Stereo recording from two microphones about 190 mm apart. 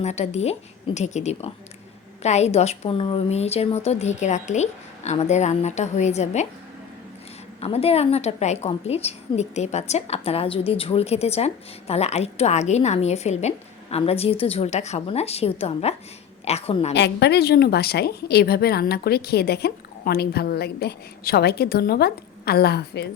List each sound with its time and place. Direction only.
0.0 s a woman's voice: 35° left (ahead or behind)
7.6 s a woman's voice: 30° left (ahead or behind)
16.9 s a woman's voice: 65° left (ahead or behind)